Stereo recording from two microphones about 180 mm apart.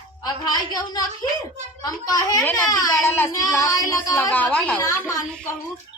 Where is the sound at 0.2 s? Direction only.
20° left (ahead or behind).